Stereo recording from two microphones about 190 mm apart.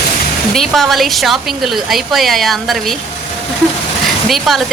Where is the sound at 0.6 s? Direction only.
Centre (ahead or behind).